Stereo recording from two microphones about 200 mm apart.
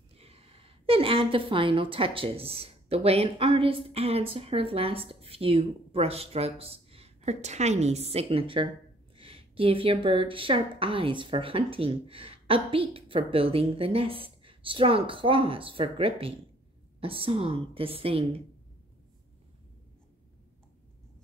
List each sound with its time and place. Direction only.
0.2 s a woman's voice: 30° right (ahead or behind)